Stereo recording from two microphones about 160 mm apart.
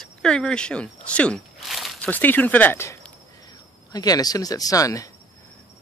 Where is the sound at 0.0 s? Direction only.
5° left (ahead or behind).